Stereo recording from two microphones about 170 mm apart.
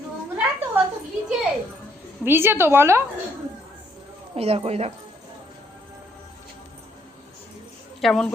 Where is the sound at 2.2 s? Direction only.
15° right (ahead or behind).